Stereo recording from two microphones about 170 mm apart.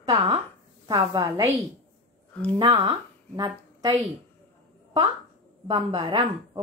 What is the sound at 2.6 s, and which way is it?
A woman's voice, 30° right (ahead or behind).